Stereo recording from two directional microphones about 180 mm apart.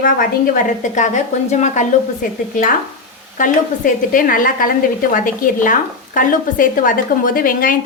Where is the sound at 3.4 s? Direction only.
45° left (ahead or behind).